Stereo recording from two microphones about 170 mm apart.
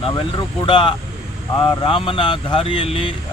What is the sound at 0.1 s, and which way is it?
Speech, 30° left (ahead or behind).